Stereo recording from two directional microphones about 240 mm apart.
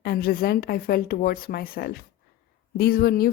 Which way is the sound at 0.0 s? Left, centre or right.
Left.